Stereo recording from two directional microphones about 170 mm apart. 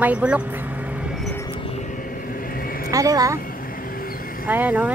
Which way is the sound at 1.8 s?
55° left (ahead or behind).